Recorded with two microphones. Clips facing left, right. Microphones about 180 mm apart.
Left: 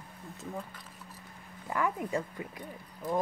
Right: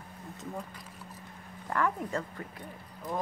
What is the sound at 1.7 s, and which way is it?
Speech, 10° left (ahead or behind).